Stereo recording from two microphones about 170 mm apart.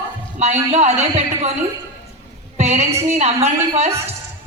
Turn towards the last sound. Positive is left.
turn(degrees=-40)  # may be behind; listen again after turning